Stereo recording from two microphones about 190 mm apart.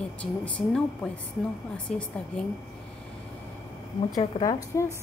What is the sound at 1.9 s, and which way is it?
Speech, 40° left (ahead or behind).